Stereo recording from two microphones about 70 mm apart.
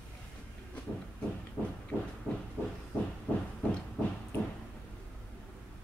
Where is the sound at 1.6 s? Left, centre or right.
Right.